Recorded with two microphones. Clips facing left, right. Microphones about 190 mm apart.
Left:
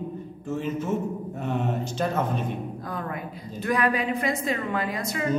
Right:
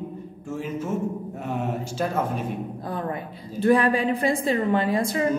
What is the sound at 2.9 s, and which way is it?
A woman's voice, 30° right (ahead or behind).